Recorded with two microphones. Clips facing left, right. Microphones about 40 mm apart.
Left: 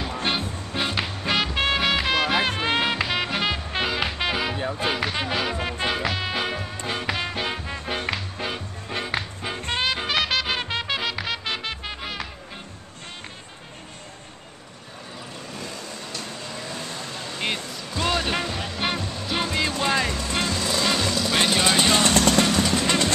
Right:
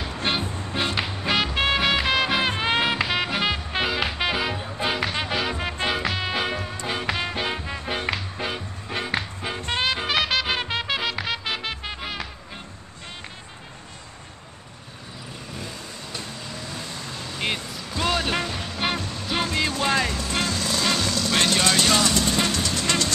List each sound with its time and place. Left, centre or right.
0.2 s music: centre
15.6 s vehicle: centre
16.6 s vehicle: centre
17.4 s music: centre
22.0 s vehicle: left
22.7 s music: left